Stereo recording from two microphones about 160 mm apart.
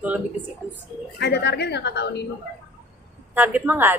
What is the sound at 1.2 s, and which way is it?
A woman's voice, 90° left.